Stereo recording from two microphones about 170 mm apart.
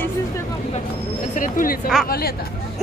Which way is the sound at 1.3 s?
50° left (ahead or behind).